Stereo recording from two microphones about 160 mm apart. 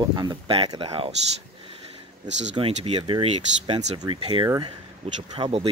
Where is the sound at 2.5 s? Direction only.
35° right (ahead or behind).